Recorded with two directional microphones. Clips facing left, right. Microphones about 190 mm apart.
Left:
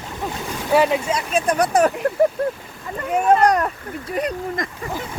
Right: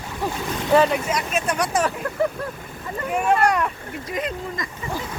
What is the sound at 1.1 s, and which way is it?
Speech, 30° left (ahead or behind).